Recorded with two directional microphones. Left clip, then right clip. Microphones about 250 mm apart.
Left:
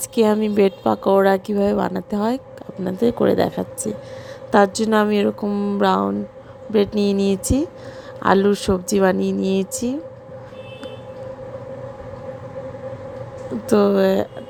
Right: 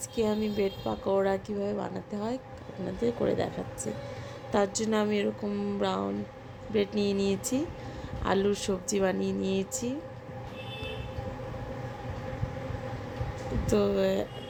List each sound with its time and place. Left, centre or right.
0.1 s a woman's voice: left
13.7 s a woman's voice: left